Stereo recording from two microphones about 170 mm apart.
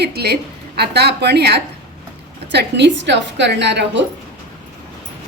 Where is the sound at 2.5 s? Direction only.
90° right.